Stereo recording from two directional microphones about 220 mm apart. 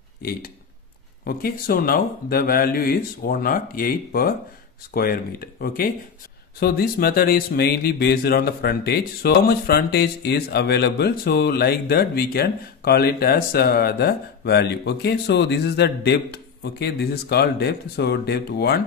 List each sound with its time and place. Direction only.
1.2 s speech: 40° left (ahead or behind)